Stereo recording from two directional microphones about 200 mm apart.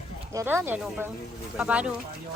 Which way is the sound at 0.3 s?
10° right (ahead or behind).